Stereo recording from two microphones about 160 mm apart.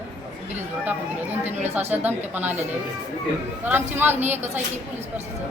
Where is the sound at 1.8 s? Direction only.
10° right (ahead or behind).